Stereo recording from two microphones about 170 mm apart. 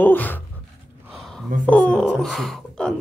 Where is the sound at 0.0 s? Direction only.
10° left (ahead or behind).